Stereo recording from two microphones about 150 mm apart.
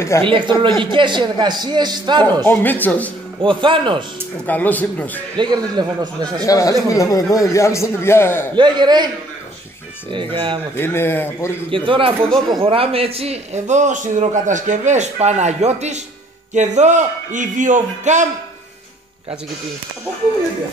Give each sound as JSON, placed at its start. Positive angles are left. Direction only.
{"t": 0.2, "sound": "speech", "side_deg": -35}
{"t": 2.4, "sound": "speech", "side_deg": 15}
{"t": 3.4, "sound": "speech", "side_deg": -35}
{"t": 4.5, "sound": "speech", "side_deg": 10}
{"t": 5.4, "sound": "speech", "side_deg": -30}
{"t": 6.4, "sound": "speech", "side_deg": 25}
{"t": 8.5, "sound": "speech", "side_deg": -30}
{"t": 10.1, "sound": "speech", "side_deg": -35}
{"t": 10.8, "sound": "speech", "side_deg": 15}
{"t": 11.7, "sound": "a man's voice", "side_deg": -35}